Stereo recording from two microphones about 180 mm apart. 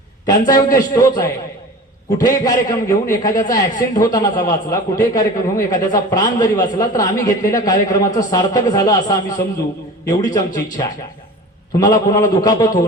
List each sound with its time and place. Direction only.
0.3 s a man's voice: 20° left (ahead or behind)